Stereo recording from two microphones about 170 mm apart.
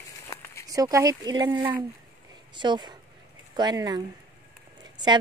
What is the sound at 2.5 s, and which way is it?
A woman's voice, 25° right (ahead or behind).